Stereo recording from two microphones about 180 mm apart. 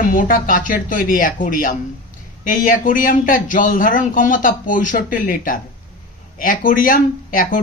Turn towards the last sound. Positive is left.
turn(degrees=50)  # may be behind; listen again after turning